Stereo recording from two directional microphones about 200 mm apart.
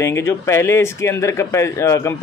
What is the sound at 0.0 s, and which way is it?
Speech, 15° left (ahead or behind).